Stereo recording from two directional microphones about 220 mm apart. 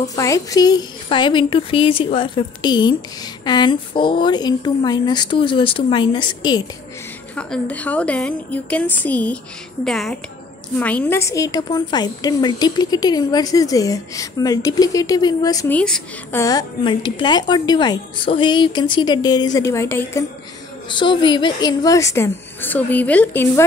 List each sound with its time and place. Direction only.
0.1 s a woman's voice: 15° left (ahead or behind)
7.3 s a woman's voice: 5° left (ahead or behind)
15.8 s a woman's voice: 5° left (ahead or behind)